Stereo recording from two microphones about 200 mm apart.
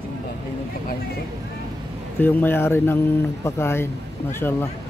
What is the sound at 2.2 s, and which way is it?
Speech, 10° left (ahead or behind).